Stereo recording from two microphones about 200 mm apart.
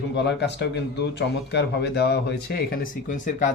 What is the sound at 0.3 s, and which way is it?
Speech, 60° left (ahead or behind).